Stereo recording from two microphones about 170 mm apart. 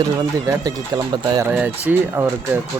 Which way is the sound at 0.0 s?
20° right (ahead or behind).